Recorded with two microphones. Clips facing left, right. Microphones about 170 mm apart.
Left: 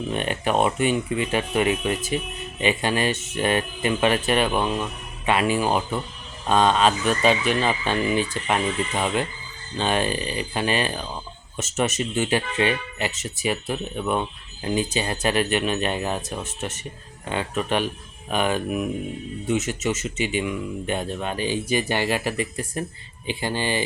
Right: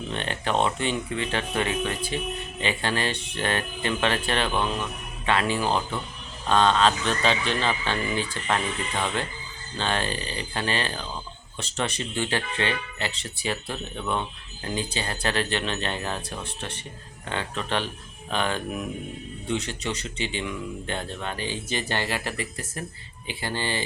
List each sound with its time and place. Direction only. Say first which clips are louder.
0.1 s speech: left 3 dB; 15° left (ahead or behind)
12.1 s speech: left 5 dB; 15° left (ahead or behind)